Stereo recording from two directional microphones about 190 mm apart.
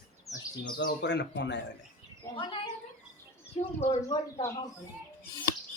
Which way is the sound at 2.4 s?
25° left (ahead or behind).